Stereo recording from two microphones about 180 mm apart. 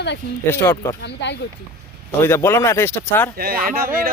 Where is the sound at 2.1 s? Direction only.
15° left (ahead or behind).